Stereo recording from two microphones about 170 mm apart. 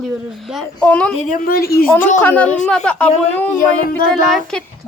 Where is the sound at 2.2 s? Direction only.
10° left (ahead or behind).